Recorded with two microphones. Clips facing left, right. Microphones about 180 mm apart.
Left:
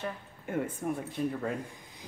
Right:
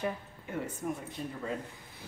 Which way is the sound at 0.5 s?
50° left (ahead or behind).